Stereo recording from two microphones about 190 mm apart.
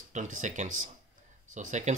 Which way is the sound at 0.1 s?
40° right (ahead or behind).